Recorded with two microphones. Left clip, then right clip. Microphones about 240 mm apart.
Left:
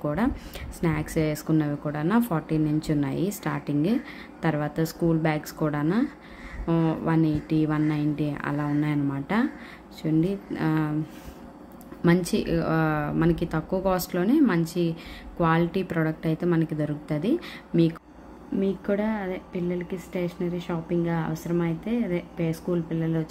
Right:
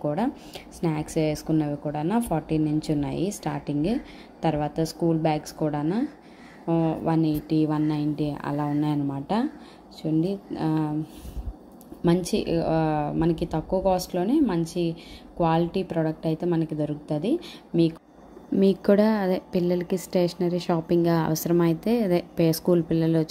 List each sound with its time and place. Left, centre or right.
0.0 s speech: centre
12.0 s speech: centre
18.6 s a woman's voice: right